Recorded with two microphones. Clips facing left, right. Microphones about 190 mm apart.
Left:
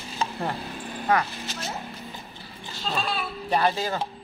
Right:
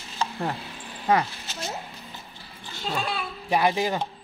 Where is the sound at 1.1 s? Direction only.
20° right (ahead or behind).